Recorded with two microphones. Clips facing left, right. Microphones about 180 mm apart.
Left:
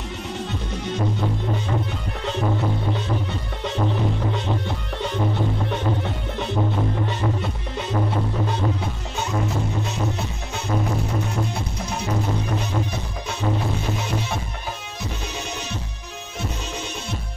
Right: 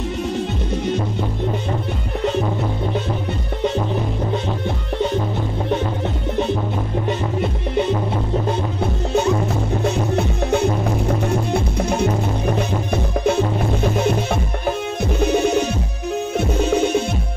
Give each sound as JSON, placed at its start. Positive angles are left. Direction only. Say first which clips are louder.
{"t": 10.1, "sound": "music", "louder": "right 12 dB", "side_deg": -55}
{"t": 15.1, "sound": "music", "louder": "right 19 dB", "side_deg": -55}